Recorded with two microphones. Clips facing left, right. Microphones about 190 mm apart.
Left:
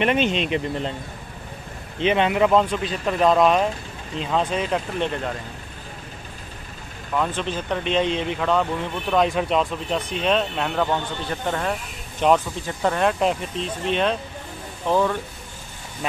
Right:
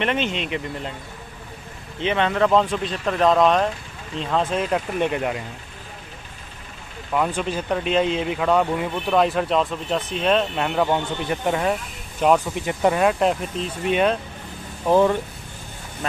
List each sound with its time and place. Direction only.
0.0 s speech: 15° left (ahead or behind)
2.0 s speech: 15° left (ahead or behind); by 5.4 s 10° right (ahead or behind)
7.2 s speech: 10° right (ahead or behind)
10.9 s a man's voice: 15° right (ahead or behind)
12.2 s speech: 5° right (ahead or behind)
12.5 s a man's voice: 15° right (ahead or behind)
13.0 s speech: centre (ahead or behind)
14.9 s speech: 20° right (ahead or behind)